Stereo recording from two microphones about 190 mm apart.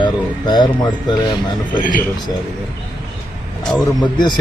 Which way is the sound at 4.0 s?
25° left (ahead or behind).